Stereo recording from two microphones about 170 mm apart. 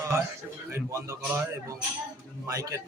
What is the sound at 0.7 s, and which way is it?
Speech, 15° right (ahead or behind).